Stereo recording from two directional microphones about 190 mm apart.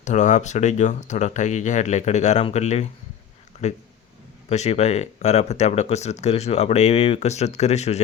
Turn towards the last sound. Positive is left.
turn(degrees=35)  # may be behind; listen again after turning